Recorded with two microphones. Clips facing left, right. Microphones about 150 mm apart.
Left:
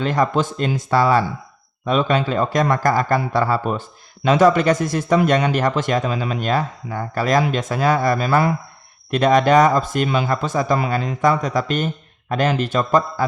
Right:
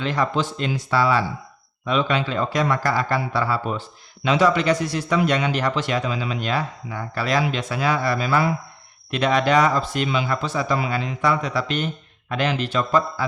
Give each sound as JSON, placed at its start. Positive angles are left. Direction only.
{"t": 0.0, "sound": "a man's voice", "side_deg": 45}